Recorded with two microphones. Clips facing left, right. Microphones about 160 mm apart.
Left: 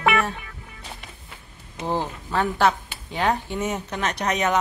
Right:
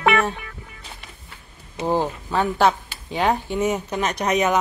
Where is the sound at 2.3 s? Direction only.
15° right (ahead or behind).